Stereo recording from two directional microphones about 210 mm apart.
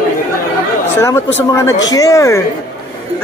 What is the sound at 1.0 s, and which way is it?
A man's voice, 15° left (ahead or behind).